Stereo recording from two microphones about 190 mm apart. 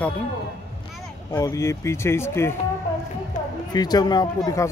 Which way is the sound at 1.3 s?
15° left (ahead or behind).